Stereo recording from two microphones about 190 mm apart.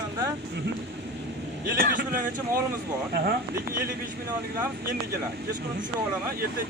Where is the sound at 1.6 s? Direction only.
50° right (ahead or behind).